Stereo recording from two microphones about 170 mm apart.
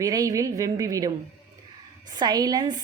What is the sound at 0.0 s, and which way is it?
Speech, 20° right (ahead or behind).